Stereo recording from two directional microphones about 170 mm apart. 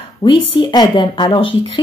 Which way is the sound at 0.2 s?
15° left (ahead or behind).